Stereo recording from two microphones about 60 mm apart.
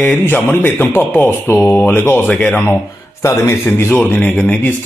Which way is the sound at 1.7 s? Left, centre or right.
Left.